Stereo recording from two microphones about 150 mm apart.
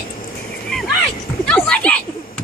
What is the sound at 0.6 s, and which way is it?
Music, centre (ahead or behind).